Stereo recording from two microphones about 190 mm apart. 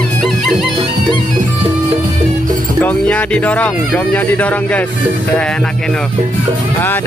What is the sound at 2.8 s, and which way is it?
Speech, 5° left (ahead or behind).